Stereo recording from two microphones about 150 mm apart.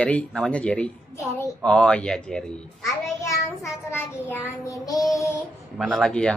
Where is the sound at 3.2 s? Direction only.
15° left (ahead or behind).